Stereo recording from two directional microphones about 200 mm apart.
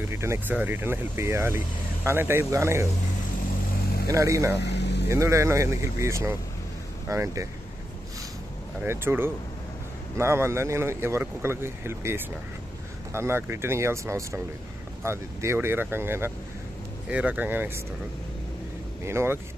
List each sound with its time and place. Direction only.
0.1 s speech: 15° right (ahead or behind)
4.1 s speech: 15° right (ahead or behind)
4.6 s vehicle: 60° left (ahead or behind)
5.1 s speech: 15° right (ahead or behind)
8.8 s speech: 10° right (ahead or behind)
19.0 s speech: 10° right (ahead or behind)